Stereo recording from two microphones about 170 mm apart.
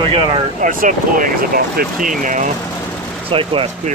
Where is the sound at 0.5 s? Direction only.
50° right (ahead or behind).